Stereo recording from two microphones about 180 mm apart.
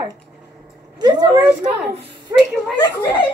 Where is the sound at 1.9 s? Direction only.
65° right (ahead or behind).